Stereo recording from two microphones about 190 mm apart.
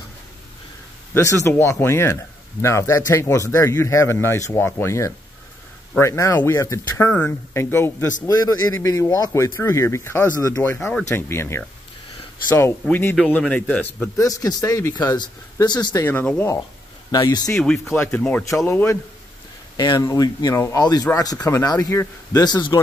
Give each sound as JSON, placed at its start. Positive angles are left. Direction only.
{"t": 1.1, "sound": "speech", "side_deg": 15}
{"t": 12.8, "sound": "speech", "side_deg": 5}
{"t": 14.1, "sound": "speech", "side_deg": 20}
{"t": 17.6, "sound": "speech", "side_deg": 5}